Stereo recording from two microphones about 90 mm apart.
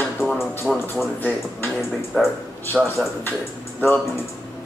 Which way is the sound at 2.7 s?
Centre (ahead or behind).